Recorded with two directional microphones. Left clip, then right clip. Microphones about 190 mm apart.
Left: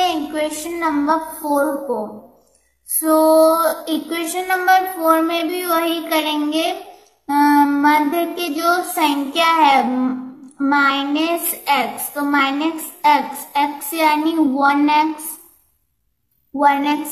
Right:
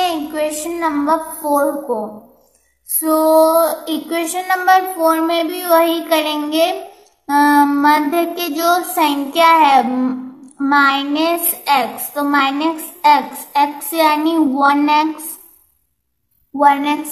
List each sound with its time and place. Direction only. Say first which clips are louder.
0.0 s a sound: right 1 dB; 15° right (ahead or behind)
0.7 s child singing: right 1 dB; 15° right (ahead or behind)
1.4 s a woman's voice: right 2 dB; 20° right (ahead or behind)
3.1 s child singing: right 1 dB; 15° right (ahead or behind)
16.5 s child singing: right 3 dB; 15° right (ahead or behind)